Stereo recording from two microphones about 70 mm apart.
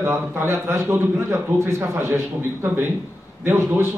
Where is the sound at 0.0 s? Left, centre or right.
Right.